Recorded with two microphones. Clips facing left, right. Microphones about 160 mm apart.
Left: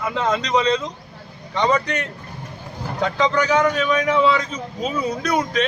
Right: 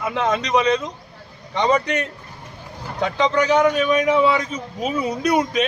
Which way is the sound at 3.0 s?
20° right (ahead or behind).